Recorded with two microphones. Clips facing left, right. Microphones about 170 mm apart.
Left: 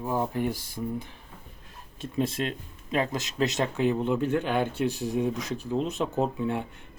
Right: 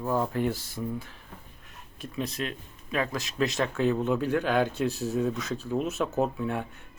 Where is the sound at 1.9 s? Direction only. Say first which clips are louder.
Left 5 dB; 25° left (ahead or behind).